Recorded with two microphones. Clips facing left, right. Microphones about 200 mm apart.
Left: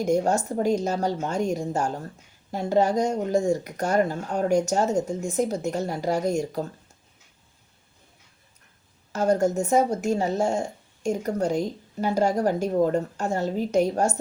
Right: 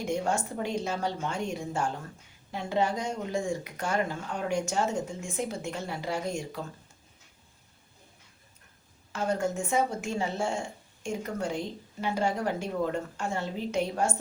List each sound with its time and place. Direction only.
0.0 s speech: 40° left (ahead or behind)
9.1 s speech: 40° left (ahead or behind)